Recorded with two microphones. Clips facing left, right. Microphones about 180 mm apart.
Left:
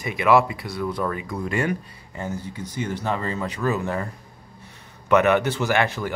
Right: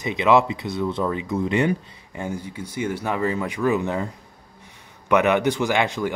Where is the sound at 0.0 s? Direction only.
20° right (ahead or behind).